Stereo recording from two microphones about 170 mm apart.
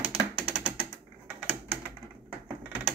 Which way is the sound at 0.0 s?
10° right (ahead or behind).